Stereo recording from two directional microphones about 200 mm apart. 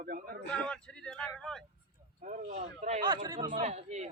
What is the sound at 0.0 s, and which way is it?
Speech, 45° right (ahead or behind).